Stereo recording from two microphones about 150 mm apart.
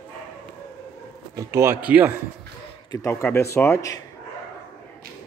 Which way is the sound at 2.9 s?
15° left (ahead or behind).